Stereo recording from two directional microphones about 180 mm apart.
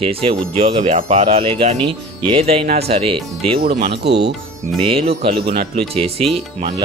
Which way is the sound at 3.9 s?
65° right (ahead or behind).